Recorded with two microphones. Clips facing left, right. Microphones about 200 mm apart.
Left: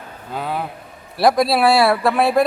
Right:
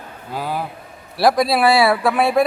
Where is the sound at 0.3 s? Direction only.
Centre (ahead or behind).